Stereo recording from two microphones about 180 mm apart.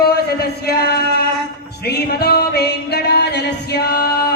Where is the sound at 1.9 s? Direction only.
60° left (ahead or behind).